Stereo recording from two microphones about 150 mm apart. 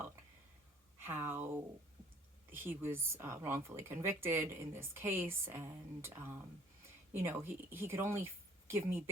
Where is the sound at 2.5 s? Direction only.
15° right (ahead or behind).